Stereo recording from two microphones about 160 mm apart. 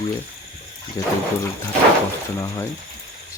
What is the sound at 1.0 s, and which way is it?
Speech, 20° left (ahead or behind).